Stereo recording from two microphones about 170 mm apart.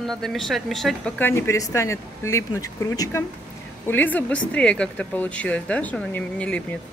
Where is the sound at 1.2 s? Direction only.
15° left (ahead or behind).